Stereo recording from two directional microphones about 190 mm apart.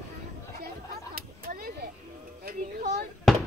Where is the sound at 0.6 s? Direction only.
50° right (ahead or behind).